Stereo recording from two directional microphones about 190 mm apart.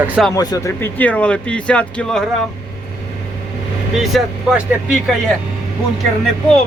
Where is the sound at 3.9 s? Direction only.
Centre (ahead or behind).